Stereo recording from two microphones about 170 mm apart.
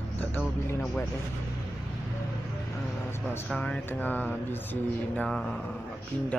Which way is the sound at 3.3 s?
5° left (ahead or behind).